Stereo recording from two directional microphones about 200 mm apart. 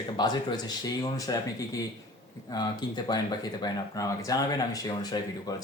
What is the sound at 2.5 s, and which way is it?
Speech, 20° left (ahead or behind).